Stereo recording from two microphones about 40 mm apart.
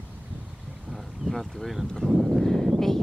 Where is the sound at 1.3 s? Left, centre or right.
Centre.